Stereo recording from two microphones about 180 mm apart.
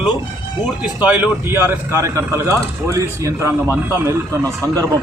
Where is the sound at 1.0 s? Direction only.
10° right (ahead or behind).